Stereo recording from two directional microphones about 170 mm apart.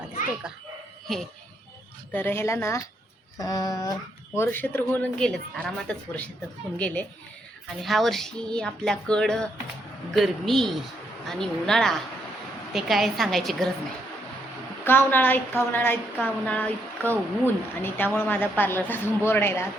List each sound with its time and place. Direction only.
0.4 s speech: 5° right (ahead or behind)
1.0 s a sound: centre (ahead or behind)
2.1 s a woman's voice: 10° left (ahead or behind)
3.3 s a sound: 20° left (ahead or behind)
4.4 s a woman's voice: 10° left (ahead or behind)
14.8 s a woman's voice: 10° left (ahead or behind)